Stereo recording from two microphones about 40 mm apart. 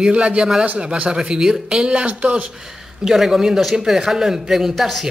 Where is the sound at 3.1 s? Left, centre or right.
Centre.